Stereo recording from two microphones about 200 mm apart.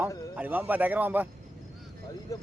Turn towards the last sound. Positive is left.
turn(degrees=-10)  # may be behind; listen again after turning